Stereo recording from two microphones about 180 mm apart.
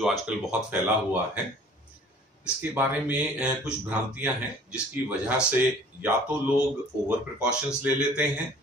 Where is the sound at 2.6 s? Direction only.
10° right (ahead or behind).